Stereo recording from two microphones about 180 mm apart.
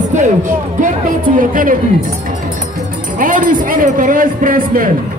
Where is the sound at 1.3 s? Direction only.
50° right (ahead or behind).